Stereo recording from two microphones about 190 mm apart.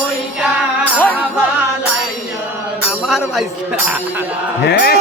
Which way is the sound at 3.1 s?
Centre (ahead or behind).